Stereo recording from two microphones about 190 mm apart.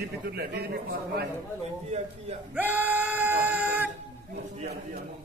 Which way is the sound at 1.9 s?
35° right (ahead or behind).